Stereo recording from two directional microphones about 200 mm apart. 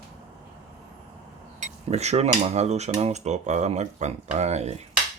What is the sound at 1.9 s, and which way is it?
Cutlery, 35° right (ahead or behind).